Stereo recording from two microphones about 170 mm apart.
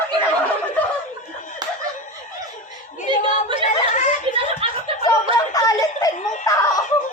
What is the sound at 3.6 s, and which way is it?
Speech, 45° left (ahead or behind).